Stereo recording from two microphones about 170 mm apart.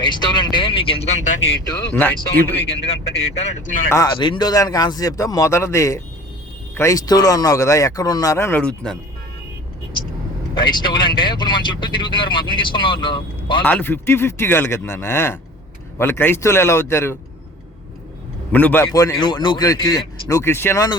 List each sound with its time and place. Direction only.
0.0 s speech: 25° left (ahead or behind); by 1.5 s 45° left (ahead or behind)
1.9 s speech: 10° left (ahead or behind)
3.3 s speech: 40° left (ahead or behind)
3.8 s speech: 20° left (ahead or behind)
10.5 s speech: 25° left (ahead or behind)
13.7 s speech: 10° left (ahead or behind)
18.5 s speech: 10° left (ahead or behind)
18.9 s speech: 25° left (ahead or behind)